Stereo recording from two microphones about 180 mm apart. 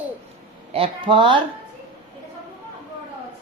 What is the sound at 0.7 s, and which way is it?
Speech, 30° right (ahead or behind).